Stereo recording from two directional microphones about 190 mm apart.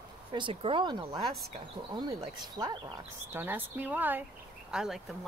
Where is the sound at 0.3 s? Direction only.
25° right (ahead or behind).